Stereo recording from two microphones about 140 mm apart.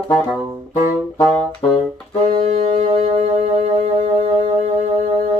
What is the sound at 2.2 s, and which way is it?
Saxophone, 60° right (ahead or behind).